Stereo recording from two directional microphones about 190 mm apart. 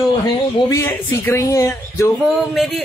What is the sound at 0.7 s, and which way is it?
Speech, 15° left (ahead or behind).